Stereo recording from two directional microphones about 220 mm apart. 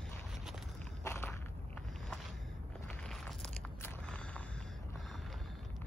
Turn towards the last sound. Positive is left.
turn(degrees=5)  # may be behind; listen again after turning